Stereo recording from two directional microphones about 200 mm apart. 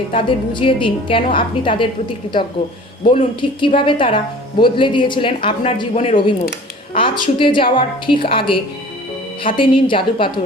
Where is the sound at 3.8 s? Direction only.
25° left (ahead or behind).